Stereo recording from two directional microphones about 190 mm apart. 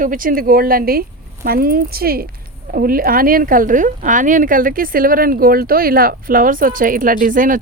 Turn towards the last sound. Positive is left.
turn(degrees=-45)  # may be behind; listen again after turning